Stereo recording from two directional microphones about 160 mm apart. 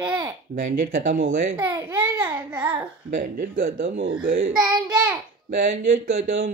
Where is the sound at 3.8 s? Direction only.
75° right (ahead or behind).